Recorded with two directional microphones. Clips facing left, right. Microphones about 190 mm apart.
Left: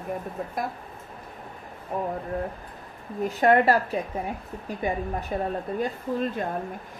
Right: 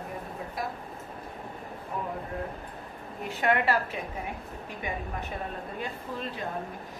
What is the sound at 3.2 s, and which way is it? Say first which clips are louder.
A woman's voice: left 7 dB; 40° left (ahead or behind).